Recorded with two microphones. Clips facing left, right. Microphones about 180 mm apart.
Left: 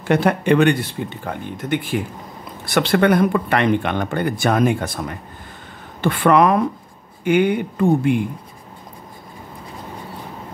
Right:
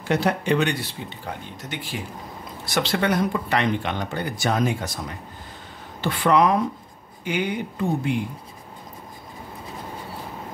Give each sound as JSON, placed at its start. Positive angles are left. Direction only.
{"t": 0.0, "sound": "speech", "side_deg": 55}